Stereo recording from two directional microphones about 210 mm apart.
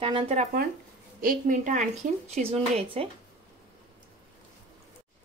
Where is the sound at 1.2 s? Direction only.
40° right (ahead or behind).